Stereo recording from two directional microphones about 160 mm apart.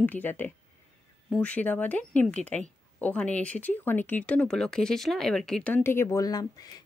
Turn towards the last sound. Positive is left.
turn(degrees=25)  # may be behind; listen again after turning